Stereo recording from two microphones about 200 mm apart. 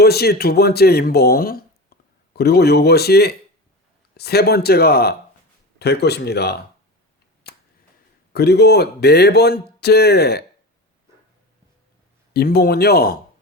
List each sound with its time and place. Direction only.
0.0 s speech: 50° left (ahead or behind)
8.3 s speech: 55° left (ahead or behind)
12.3 s speech: 50° left (ahead or behind)